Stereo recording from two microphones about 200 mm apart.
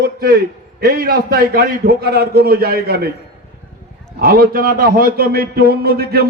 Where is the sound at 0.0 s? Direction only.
50° right (ahead or behind).